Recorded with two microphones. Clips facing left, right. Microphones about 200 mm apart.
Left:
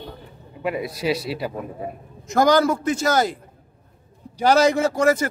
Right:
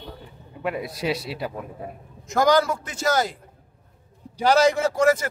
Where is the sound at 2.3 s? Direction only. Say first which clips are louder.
Left 2 dB; 50° left (ahead or behind).